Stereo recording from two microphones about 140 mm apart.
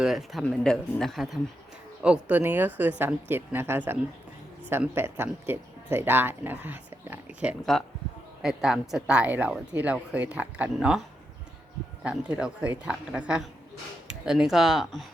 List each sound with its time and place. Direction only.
0.0 s a woman's voice: centre (ahead or behind)
7.6 s a woman's voice: centre (ahead or behind)
12.0 s a woman's voice: 10° right (ahead or behind)